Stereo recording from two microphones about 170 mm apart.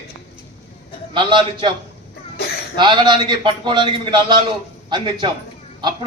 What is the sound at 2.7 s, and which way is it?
A man's voice, 25° right (ahead or behind).